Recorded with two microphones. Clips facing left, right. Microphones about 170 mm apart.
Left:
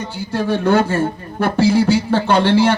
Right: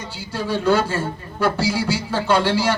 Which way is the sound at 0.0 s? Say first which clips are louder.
Left 6 dB; 55° left (ahead or behind).